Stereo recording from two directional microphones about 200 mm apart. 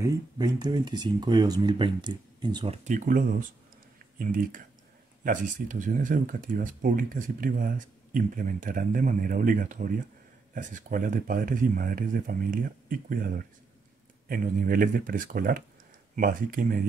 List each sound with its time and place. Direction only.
0.0 s speech: 20° right (ahead or behind)
2.8 s speech: 40° right (ahead or behind)